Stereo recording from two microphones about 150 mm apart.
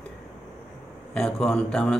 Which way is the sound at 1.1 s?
5° left (ahead or behind).